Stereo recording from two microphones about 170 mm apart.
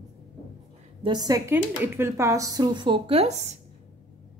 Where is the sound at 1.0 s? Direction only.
25° right (ahead or behind).